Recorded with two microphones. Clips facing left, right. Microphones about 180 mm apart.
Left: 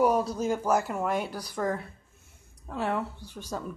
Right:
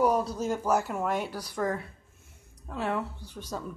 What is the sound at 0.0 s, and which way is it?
A man's voice, 5° left (ahead or behind).